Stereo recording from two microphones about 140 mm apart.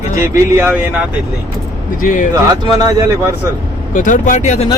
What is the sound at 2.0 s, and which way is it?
Speech, 70° left (ahead or behind).